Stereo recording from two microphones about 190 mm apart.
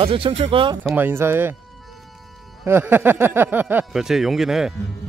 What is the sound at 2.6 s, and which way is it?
Speech, 10° right (ahead or behind).